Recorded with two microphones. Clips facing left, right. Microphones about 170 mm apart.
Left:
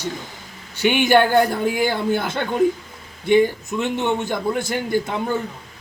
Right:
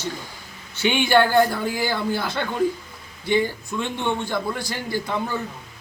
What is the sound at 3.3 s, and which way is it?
A man's voice, 20° left (ahead or behind).